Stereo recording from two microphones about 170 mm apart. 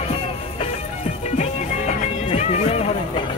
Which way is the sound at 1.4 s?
35° left (ahead or behind).